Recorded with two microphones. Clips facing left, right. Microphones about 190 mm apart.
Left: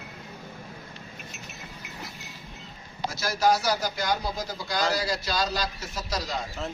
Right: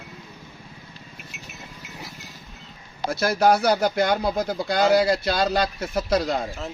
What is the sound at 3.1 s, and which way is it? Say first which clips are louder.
Speech: right 5 dB; 60° right (ahead or behind).